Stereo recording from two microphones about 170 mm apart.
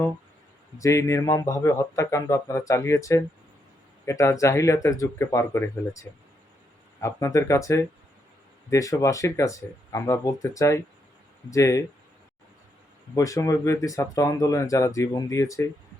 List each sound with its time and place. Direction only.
0.8 s a man's voice: 20° left (ahead or behind)
13.1 s speech: 20° left (ahead or behind)